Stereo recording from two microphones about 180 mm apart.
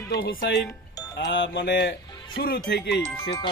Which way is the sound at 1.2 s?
85° left.